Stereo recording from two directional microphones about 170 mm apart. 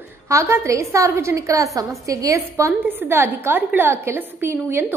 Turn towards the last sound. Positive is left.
turn(degrees=-15)  # may be behind; listen again after turning